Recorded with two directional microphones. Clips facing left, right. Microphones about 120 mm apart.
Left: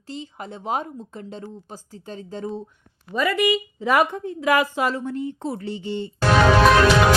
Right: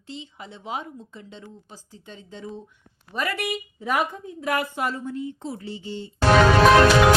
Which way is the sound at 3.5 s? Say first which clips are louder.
Left 6 dB; 90° left.